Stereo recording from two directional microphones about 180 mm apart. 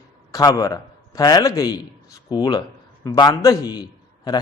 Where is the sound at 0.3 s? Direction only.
20° left (ahead or behind).